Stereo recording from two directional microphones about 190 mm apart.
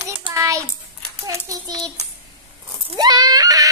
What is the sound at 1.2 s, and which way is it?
Speech, 20° right (ahead or behind).